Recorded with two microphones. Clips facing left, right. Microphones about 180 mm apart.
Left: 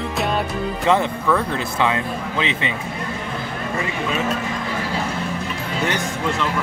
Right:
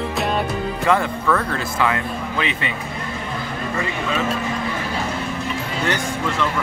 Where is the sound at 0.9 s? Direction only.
15° left (ahead or behind).